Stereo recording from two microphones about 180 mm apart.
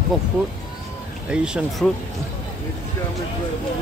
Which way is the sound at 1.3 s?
Centre (ahead or behind).